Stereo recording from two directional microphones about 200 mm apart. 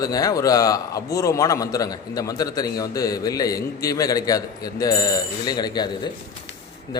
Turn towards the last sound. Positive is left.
turn(degrees=20)  # may be behind; listen again after turning